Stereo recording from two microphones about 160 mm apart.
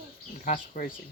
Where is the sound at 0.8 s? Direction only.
60° left (ahead or behind).